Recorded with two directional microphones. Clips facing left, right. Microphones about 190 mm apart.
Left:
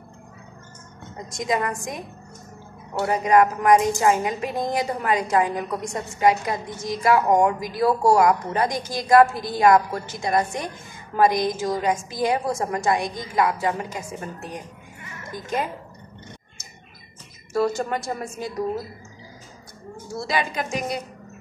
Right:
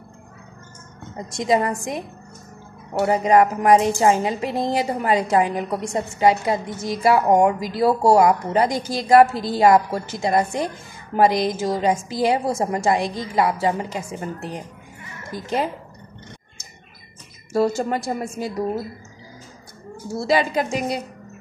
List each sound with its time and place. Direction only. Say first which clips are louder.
1.3 s a woman's voice: right 5 dB; 25° right (ahead or behind)
17.5 s a woman's voice: right 3 dB; 30° right (ahead or behind)
20.2 s a woman's voice: right 6 dB; 30° right (ahead or behind)